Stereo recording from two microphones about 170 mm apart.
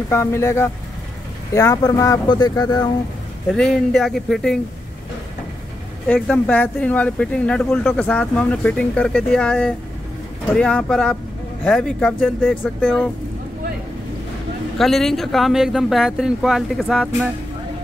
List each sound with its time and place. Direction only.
0.1 s speech: 15° left (ahead or behind)
3.5 s speech: centre (ahead or behind)
6.0 s speech: 5° left (ahead or behind)
14.8 s speech: centre (ahead or behind)